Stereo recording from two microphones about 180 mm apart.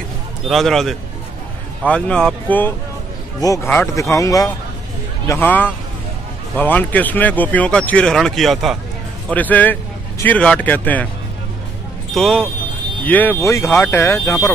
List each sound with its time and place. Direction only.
0.5 s a man's voice: centre (ahead or behind)
12.1 s speech: 5° left (ahead or behind)